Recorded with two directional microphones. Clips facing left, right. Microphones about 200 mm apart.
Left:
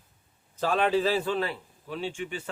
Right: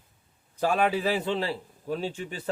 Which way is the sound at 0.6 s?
10° right (ahead or behind).